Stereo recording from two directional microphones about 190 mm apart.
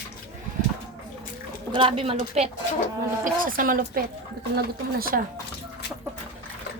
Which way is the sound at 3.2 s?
45° right (ahead or behind).